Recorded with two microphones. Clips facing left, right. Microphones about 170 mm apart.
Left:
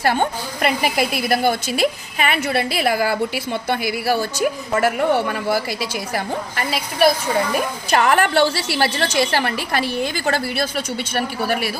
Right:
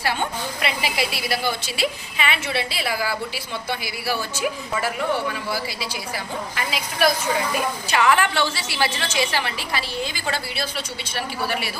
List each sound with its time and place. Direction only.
0.0 s a woman's voice: 50° left (ahead or behind)
4.7 s a woman's voice: 60° left (ahead or behind)
7.9 s a woman's voice: 45° left (ahead or behind)